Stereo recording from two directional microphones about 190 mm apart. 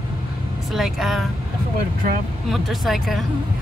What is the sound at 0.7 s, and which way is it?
Vehicle, centre (ahead or behind).